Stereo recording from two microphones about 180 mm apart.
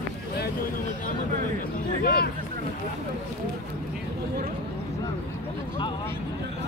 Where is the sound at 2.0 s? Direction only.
60° left (ahead or behind).